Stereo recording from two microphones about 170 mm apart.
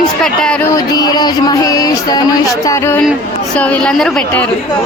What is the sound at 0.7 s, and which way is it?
A woman's voice, 25° left (ahead or behind).